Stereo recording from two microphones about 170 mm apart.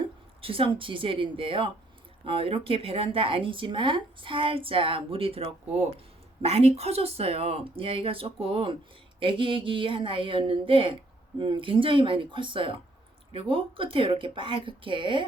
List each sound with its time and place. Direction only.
0.4 s speech: 30° right (ahead or behind)